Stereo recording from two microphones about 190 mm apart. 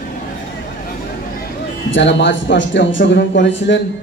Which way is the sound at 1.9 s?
70° left (ahead or behind).